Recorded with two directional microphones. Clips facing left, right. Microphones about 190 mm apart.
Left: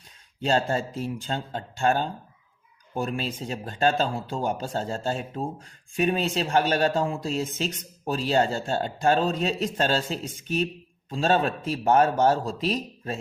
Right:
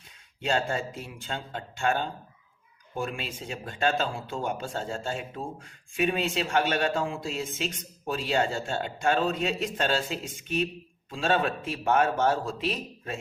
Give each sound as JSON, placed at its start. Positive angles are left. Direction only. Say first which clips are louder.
{"t": 0.4, "sound": "a man's voice", "louder": "left 4 dB", "side_deg": 35}